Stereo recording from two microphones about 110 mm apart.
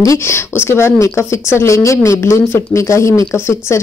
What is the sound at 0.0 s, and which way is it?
Speech, 25° left (ahead or behind).